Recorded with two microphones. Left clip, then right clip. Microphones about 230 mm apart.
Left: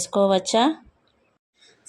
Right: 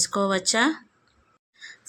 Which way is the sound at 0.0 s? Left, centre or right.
Centre.